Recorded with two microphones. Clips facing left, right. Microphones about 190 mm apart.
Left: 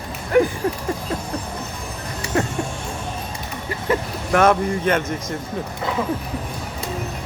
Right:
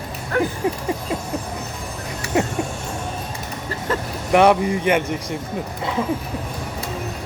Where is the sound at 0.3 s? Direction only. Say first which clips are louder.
Left 5 dB; 15° left (ahead or behind).